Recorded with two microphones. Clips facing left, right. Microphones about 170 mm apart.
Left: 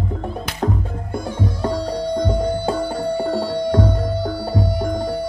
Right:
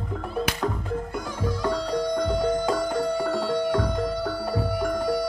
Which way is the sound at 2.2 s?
30° left (ahead or behind).